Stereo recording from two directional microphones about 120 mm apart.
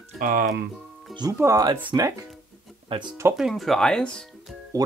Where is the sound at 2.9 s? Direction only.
50° right (ahead or behind).